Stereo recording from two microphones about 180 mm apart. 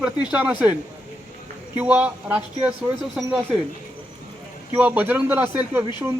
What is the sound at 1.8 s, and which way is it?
Speech, 10° right (ahead or behind).